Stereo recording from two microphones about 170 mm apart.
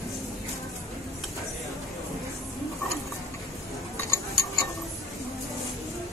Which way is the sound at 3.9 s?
15° left (ahead or behind).